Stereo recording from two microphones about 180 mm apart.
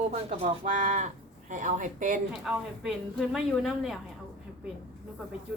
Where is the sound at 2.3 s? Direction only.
5° right (ahead or behind).